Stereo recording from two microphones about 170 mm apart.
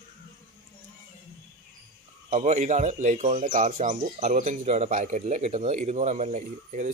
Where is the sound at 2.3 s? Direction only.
45° right (ahead or behind).